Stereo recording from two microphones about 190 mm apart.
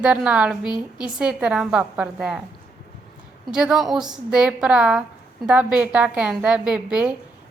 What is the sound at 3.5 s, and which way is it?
A woman's voice, 5° right (ahead or behind).